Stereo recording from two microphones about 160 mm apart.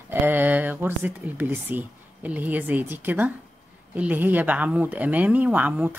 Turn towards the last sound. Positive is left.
turn(degrees=-10)  # may be behind; listen again after turning